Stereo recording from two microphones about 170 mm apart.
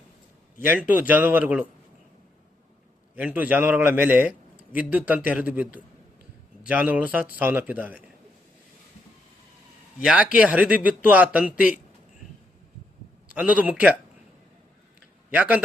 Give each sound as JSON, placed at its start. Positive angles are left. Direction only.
{"t": 0.6, "sound": "a man's voice", "side_deg": -10}
{"t": 3.2, "sound": "a man's voice", "side_deg": -10}
{"t": 10.0, "sound": "a man's voice", "side_deg": -5}
{"t": 13.2, "sound": "a man's voice", "side_deg": -5}
{"t": 15.3, "sound": "a man's voice", "side_deg": -10}